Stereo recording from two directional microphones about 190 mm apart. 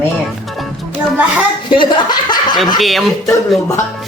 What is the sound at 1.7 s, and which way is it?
Chuckle, 25° left (ahead or behind).